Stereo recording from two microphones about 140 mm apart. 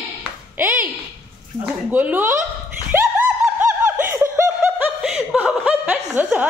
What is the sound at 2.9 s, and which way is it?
Snicker, 15° right (ahead or behind).